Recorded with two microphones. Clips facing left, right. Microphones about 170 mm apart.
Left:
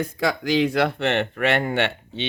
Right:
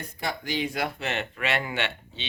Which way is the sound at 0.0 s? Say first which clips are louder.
Left 9 dB; 90° left.